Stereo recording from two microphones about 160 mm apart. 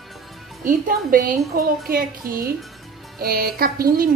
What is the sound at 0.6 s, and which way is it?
A woman's voice, 60° right (ahead or behind).